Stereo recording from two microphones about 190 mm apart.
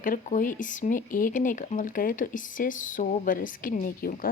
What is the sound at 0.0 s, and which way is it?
Speech, 45° left (ahead or behind).